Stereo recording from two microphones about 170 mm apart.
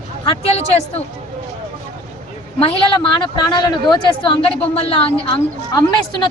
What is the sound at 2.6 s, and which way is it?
A woman's voice, 30° left (ahead or behind).